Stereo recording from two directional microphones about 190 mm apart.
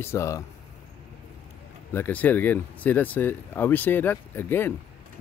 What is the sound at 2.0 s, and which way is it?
Speech, 10° left (ahead or behind).